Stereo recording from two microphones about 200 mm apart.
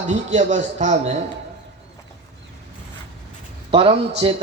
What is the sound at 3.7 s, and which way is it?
Speech, 30° right (ahead or behind).